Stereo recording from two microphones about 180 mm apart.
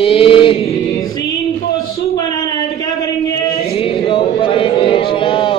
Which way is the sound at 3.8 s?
30° left (ahead or behind).